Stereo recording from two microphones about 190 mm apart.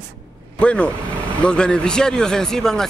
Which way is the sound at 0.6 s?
5° left (ahead or behind).